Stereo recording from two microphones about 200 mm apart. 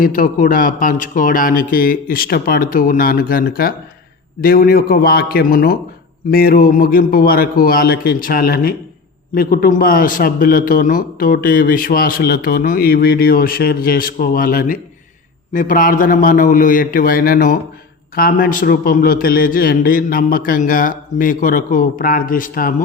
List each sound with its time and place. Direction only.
0.0 s a man's voice: 45° left (ahead or behind)